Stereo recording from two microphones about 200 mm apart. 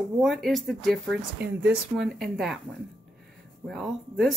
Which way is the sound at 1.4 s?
55° right (ahead or behind).